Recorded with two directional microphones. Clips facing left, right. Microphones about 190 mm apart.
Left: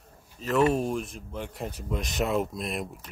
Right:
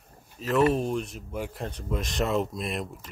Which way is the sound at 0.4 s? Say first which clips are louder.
Right 1 dB; centre (ahead or behind).